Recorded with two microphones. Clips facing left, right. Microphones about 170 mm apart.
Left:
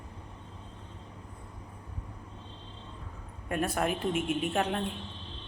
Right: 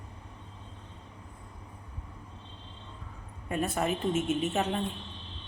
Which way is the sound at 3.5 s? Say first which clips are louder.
Even; centre (ahead or behind).